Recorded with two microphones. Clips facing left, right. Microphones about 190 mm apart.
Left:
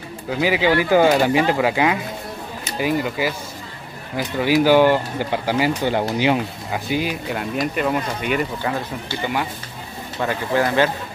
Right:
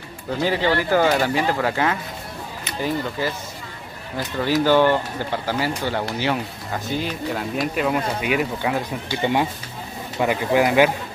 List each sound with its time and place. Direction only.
0.3 s speech: 10° left (ahead or behind); by 9.2 s 10° right (ahead or behind)
9.2 s speech: 25° right (ahead or behind)